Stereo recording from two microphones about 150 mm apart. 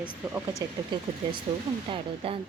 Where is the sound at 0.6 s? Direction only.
25° right (ahead or behind).